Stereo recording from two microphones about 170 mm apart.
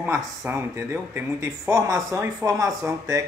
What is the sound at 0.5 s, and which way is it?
Speech, 15° right (ahead or behind).